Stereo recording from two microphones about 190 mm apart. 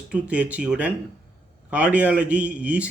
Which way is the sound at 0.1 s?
5° right (ahead or behind).